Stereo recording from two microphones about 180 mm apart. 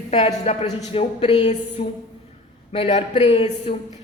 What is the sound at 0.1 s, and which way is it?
A man's voice, 35° left (ahead or behind).